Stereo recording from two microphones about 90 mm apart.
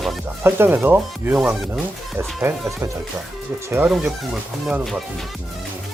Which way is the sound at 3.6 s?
25° right (ahead or behind).